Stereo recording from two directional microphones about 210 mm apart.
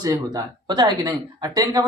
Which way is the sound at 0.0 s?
20° right (ahead or behind).